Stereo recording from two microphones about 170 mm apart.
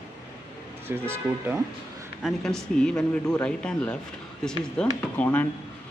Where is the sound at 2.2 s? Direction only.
5° left (ahead or behind).